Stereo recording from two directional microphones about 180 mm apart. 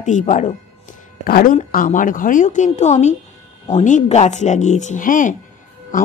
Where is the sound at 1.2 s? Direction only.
55° left (ahead or behind).